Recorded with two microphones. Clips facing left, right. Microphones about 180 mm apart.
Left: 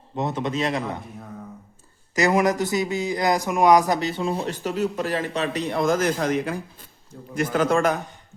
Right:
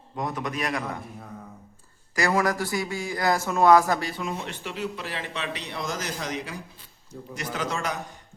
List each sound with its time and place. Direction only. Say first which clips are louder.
0.2 s speech: left 5 dB; 25° left (ahead or behind)
2.1 s a man's voice: left 4 dB; 20° left (ahead or behind); by 7.9 s 50° left (ahead or behind)